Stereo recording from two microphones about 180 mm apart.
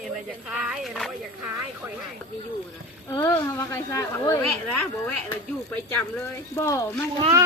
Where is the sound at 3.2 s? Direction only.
15° left (ahead or behind).